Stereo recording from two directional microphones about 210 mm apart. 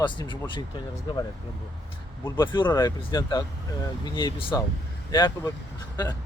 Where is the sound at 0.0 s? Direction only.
20° left (ahead or behind).